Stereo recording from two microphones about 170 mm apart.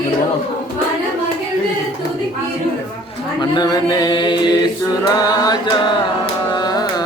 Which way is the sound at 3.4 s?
25° left (ahead or behind).